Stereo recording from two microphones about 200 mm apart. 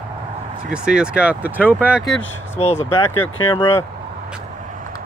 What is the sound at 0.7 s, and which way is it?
Speech, 5° right (ahead or behind).